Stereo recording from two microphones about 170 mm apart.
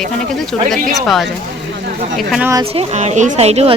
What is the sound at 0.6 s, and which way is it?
Speech, centre (ahead or behind).